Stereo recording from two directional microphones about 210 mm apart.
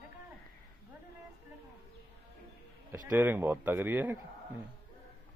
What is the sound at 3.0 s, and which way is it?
Speech, 10° right (ahead or behind).